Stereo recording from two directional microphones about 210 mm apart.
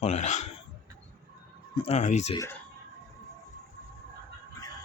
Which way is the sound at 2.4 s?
10° left (ahead or behind).